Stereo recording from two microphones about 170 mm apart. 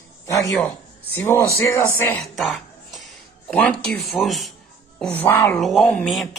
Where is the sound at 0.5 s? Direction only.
10° left (ahead or behind).